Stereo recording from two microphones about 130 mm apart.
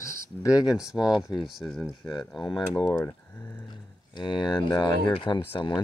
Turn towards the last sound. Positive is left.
turn(degrees=35)  # may be behind; listen again after turning